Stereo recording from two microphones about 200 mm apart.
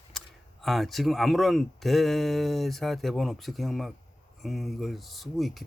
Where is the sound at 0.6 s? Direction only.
Centre (ahead or behind).